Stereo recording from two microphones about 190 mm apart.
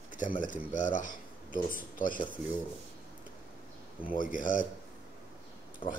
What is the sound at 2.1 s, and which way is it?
Speech, 25° left (ahead or behind).